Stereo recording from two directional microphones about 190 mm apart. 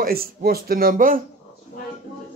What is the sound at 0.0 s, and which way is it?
Speech, 50° right (ahead or behind).